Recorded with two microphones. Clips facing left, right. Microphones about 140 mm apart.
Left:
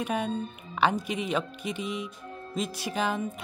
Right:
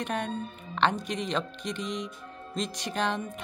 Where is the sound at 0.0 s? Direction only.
5° left (ahead or behind).